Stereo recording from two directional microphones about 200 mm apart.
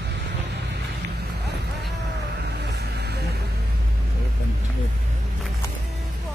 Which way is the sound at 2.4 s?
55° right (ahead or behind).